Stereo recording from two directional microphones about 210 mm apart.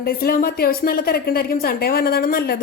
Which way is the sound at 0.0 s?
45° left (ahead or behind).